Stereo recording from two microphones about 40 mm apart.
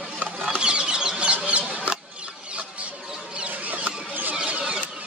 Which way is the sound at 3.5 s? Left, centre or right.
Right.